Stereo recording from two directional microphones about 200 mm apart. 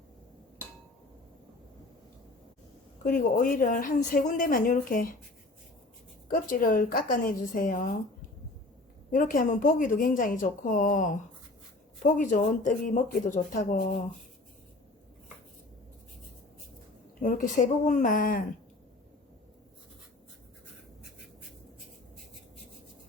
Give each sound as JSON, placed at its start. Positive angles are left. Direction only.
{"t": 3.0, "sound": "a woman's voice", "side_deg": 45}
{"t": 6.2, "sound": "a woman's voice", "side_deg": 45}
{"t": 9.1, "sound": "a woman's voice", "side_deg": 45}
{"t": 17.2, "sound": "a woman's voice", "side_deg": 40}